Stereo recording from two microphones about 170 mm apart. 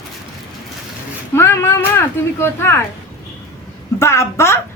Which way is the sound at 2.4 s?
15° left (ahead or behind).